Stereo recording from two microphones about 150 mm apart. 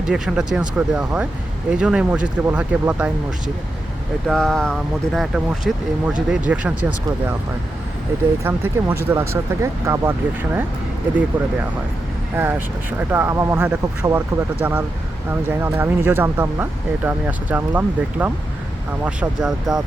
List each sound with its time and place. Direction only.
0.1 s speech: 5° right (ahead or behind)
4.3 s speech: 5° left (ahead or behind)
8.4 s speech: 15° right (ahead or behind)
12.4 s speech: 15° right (ahead or behind)